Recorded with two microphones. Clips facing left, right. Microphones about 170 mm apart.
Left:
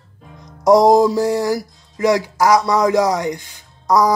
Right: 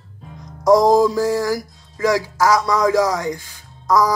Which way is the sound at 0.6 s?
20° left (ahead or behind).